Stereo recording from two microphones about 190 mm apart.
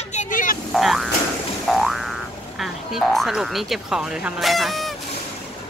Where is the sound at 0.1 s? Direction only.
40° left (ahead or behind).